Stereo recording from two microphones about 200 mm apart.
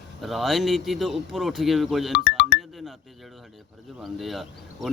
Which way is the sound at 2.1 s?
60° left (ahead or behind).